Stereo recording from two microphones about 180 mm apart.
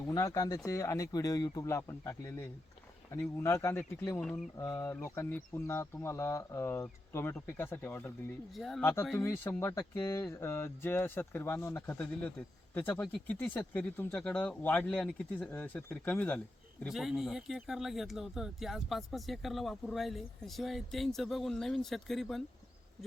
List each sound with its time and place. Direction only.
0.1 s speech: 20° left (ahead or behind)
8.5 s speech: centre (ahead or behind)
8.8 s speech: 15° left (ahead or behind)
16.8 s speech: centre (ahead or behind)